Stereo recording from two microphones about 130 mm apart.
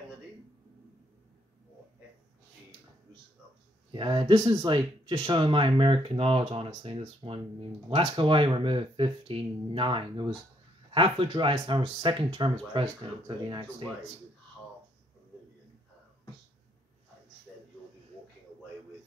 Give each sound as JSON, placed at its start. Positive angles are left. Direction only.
{"t": 3.9, "sound": "speech", "side_deg": -35}
{"t": 4.3, "sound": "speech", "side_deg": -25}